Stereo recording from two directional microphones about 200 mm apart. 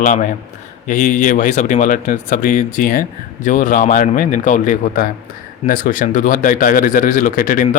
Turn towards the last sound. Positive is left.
turn(degrees=40)  # may be behind; listen again after turning